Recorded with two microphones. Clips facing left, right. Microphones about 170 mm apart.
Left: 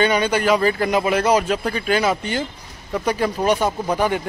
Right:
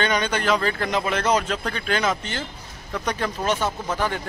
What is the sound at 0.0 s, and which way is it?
A man's voice, 10° left (ahead or behind).